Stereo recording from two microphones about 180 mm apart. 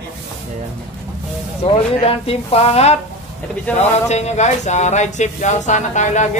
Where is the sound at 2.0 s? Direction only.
35° left (ahead or behind).